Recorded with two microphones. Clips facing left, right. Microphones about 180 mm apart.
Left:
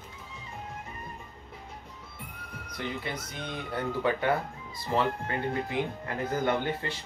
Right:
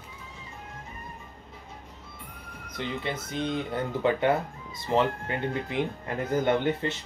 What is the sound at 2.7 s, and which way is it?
Speech, 25° right (ahead or behind).